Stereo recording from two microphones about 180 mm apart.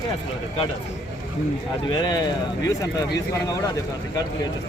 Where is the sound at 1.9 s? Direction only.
25° left (ahead or behind).